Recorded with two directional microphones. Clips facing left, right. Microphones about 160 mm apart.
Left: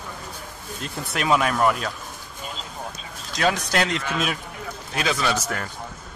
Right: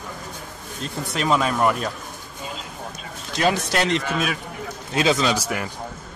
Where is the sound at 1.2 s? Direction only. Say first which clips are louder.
Even; 5° left (ahead or behind).